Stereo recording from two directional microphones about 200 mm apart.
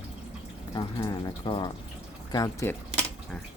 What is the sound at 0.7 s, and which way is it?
Speech, 25° left (ahead or behind).